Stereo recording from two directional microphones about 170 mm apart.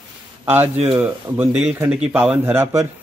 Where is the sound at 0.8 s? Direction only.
10° right (ahead or behind).